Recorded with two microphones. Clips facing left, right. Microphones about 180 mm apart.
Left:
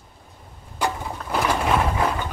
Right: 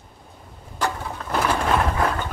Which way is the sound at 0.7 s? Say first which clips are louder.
Even; 10° left (ahead or behind).